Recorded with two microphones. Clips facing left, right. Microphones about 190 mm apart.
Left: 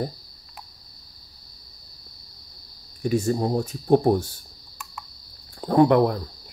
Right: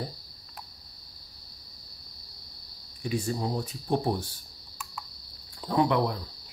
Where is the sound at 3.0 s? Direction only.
45° left (ahead or behind).